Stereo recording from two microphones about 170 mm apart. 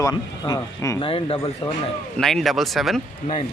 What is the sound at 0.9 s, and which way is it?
Speech, 35° left (ahead or behind).